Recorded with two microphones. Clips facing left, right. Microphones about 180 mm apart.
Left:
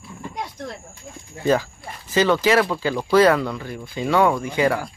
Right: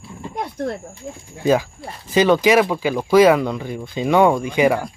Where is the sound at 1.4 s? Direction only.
15° right (ahead or behind).